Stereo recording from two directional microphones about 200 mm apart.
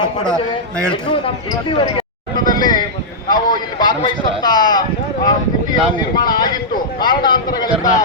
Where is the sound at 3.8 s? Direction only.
20° left (ahead or behind).